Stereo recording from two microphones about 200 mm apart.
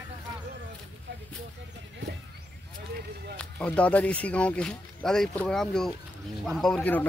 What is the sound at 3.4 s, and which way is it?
Speech, 5° left (ahead or behind).